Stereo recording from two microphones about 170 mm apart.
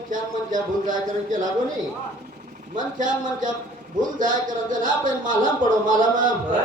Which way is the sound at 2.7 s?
50° right (ahead or behind).